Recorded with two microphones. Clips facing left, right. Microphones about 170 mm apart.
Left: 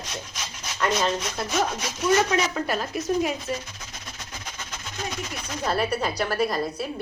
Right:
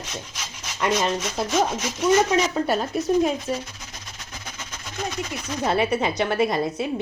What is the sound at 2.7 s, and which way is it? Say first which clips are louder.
Speech: right 4 dB; 30° right (ahead or behind).